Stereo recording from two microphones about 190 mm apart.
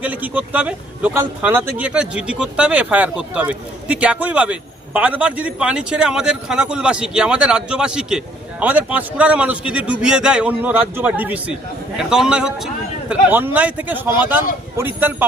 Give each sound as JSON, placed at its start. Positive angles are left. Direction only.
{"t": 0.0, "sound": "a man's voice", "side_deg": -10}